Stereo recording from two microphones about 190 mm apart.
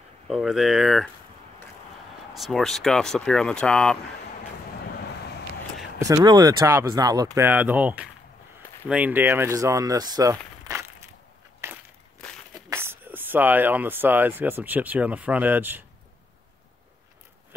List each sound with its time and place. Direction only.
0.3 s speech: centre (ahead or behind)
2.3 s speech: centre (ahead or behind)
5.9 s speech: 15° right (ahead or behind)
11.6 s crushing: 10° right (ahead or behind)
12.6 s speech: 10° right (ahead or behind)